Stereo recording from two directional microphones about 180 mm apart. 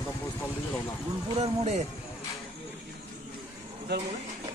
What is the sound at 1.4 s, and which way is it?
Speech, 40° right (ahead or behind).